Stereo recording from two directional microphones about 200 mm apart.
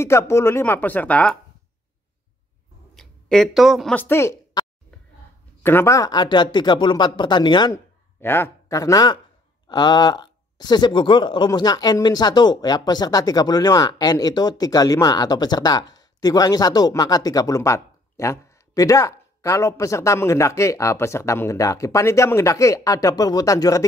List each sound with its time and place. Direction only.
0.0 s speech: 15° left (ahead or behind)
2.9 s speech: centre (ahead or behind)